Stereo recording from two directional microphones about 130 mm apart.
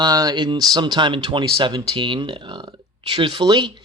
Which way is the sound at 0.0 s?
30° right (ahead or behind).